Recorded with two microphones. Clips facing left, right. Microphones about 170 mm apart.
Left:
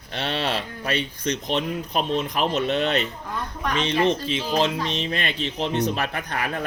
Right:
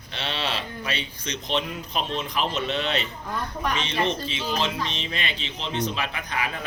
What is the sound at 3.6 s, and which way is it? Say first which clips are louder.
Speech: left 5 dB; centre (ahead or behind).